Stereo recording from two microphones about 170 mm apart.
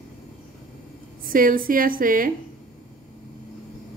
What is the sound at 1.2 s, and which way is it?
A woman's voice, 55° right (ahead or behind).